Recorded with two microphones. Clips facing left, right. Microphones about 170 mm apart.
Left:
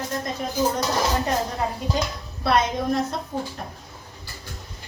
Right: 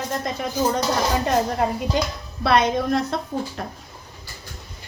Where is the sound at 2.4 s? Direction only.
75° right (ahead or behind).